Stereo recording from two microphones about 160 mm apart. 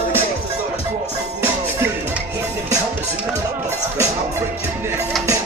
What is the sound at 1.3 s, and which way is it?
Music, 15° right (ahead or behind).